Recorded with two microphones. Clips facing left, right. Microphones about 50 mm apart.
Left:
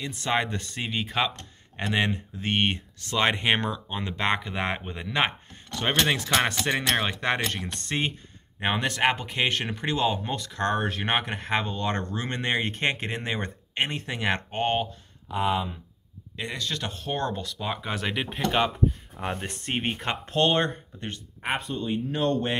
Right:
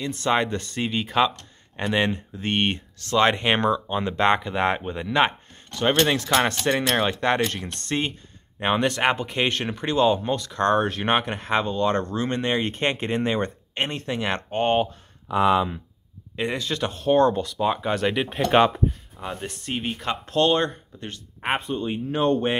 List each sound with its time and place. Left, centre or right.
0.0 s speech: centre
12.7 s speech: centre
16.3 s speech: centre
19.3 s speech: left
21.4 s speech: right